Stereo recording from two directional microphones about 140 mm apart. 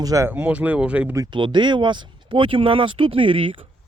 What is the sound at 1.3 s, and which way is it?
Speech, 35° right (ahead or behind).